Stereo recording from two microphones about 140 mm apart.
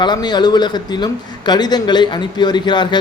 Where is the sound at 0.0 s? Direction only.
30° left (ahead or behind).